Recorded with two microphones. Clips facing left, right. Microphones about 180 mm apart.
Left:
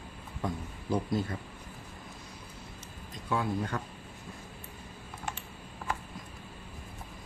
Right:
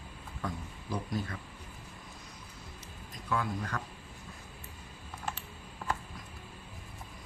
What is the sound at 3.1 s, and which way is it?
Speech, 25° left (ahead or behind).